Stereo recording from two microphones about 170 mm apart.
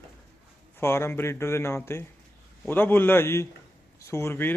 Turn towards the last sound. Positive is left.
turn(degrees=15)  # may be behind; listen again after turning